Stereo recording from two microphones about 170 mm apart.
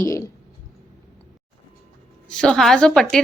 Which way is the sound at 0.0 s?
20° left (ahead or behind).